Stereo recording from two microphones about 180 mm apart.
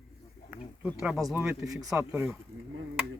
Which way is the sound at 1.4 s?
15° right (ahead or behind).